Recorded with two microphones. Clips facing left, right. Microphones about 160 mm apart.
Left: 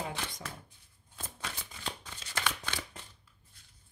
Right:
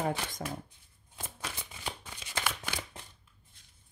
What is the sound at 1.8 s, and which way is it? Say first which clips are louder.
Shuffling cards: right 1 dB; 15° right (ahead or behind).